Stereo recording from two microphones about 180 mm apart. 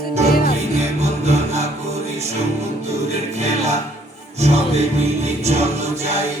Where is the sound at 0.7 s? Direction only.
35° right (ahead or behind).